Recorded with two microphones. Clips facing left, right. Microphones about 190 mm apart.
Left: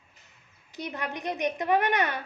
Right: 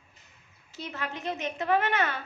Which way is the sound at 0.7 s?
15° left (ahead or behind).